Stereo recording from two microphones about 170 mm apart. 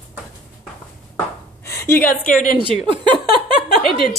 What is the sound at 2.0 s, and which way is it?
Speech, 55° left (ahead or behind).